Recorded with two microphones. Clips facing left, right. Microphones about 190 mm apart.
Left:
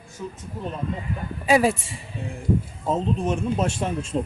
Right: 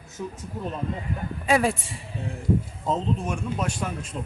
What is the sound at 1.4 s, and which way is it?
Speech, 5° left (ahead or behind).